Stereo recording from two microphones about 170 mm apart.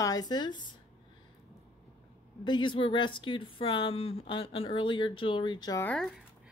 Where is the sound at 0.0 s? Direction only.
20° left (ahead or behind).